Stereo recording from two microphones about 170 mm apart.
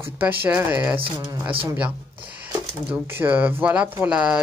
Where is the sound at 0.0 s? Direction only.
10° right (ahead or behind).